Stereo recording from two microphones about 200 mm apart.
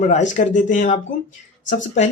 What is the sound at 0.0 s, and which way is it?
Speech, 35° left (ahead or behind).